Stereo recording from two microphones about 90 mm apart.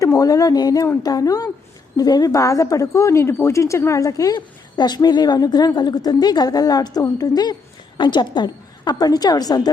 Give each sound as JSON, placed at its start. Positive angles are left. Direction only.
{"t": 0.2, "sound": "a woman's voice", "side_deg": 40}
{"t": 7.9, "sound": "a woman's voice", "side_deg": 60}